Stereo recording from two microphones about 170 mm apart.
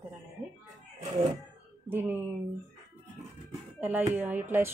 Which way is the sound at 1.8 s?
10° right (ahead or behind).